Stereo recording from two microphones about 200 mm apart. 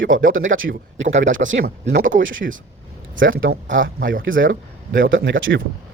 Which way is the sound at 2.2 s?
70° right (ahead or behind).